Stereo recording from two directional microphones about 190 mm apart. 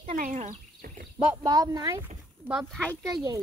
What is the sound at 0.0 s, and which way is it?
Speech, 40° right (ahead or behind).